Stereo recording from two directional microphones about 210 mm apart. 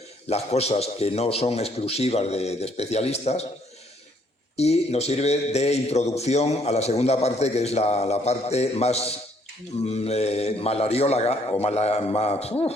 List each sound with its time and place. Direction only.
0.3 s a man's voice: 30° left (ahead or behind)
4.5 s a man's voice: 30° left (ahead or behind)